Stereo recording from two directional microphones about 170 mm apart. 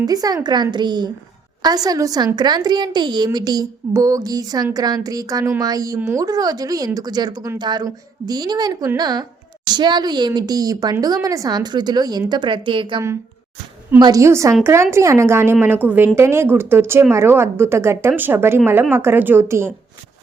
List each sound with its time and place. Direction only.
0.0 s a woman's voice: 20° right (ahead or behind)
14.0 s speech: 20° right (ahead or behind)